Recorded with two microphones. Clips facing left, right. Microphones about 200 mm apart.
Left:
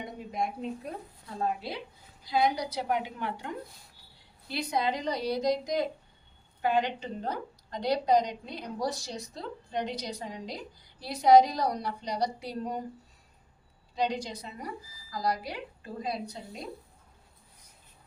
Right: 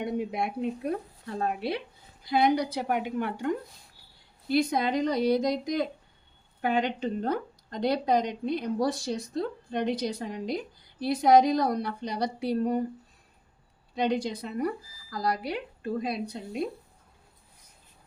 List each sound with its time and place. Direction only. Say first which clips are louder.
0.0 s a woman's voice: right 5 dB; 70° right (ahead or behind); by 3.5 s 50° right (ahead or behind)
4.5 s a woman's voice: right 5 dB; 55° right (ahead or behind)
13.9 s a woman's voice: right 4 dB; 55° right (ahead or behind)